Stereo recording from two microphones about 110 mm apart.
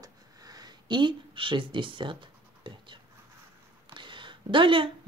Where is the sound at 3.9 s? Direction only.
45° right (ahead or behind).